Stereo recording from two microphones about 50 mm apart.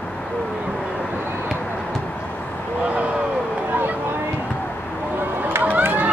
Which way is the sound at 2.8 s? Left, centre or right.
Right.